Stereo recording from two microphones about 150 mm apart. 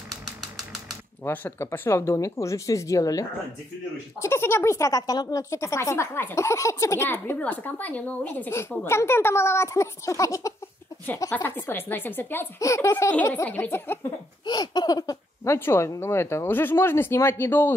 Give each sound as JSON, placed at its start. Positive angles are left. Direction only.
{"t": 1.2, "sound": "speech", "side_deg": 15}
{"t": 14.4, "sound": "speech", "side_deg": 25}